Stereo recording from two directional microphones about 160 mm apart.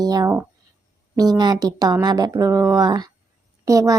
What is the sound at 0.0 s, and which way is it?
Speech, 25° right (ahead or behind).